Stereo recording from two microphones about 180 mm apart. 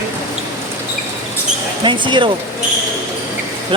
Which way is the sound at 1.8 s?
25° right (ahead or behind).